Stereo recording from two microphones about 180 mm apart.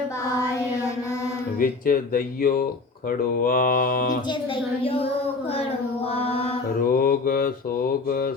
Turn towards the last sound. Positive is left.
turn(degrees=50)  # may be behind; listen again after turning